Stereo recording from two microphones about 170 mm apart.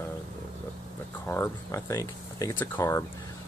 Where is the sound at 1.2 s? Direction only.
15° left (ahead or behind).